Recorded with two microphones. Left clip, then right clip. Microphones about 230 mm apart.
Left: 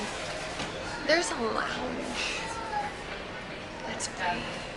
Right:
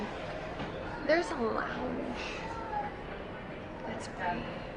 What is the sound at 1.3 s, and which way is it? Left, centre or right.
Speech, right.